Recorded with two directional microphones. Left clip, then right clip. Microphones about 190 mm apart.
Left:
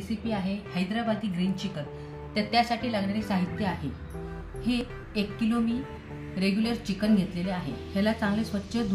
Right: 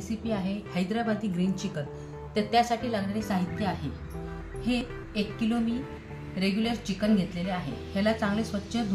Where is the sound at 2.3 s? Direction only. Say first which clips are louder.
Right 1 dB; 5° right (ahead or behind).